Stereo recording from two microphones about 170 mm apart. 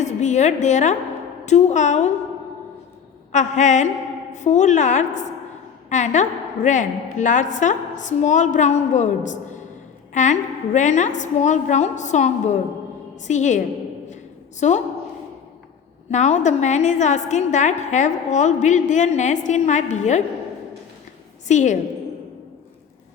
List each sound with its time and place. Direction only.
0.0 s a woman's voice: 45° left (ahead or behind)
3.3 s a woman's voice: 45° left (ahead or behind)
16.1 s a woman's voice: 45° left (ahead or behind)
21.4 s a woman's voice: 45° left (ahead or behind)